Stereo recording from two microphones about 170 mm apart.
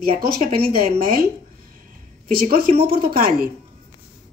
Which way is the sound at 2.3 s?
60° right (ahead or behind).